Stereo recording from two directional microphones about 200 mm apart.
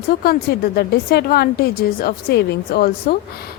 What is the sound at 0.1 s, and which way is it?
A woman's voice, 50° left (ahead or behind).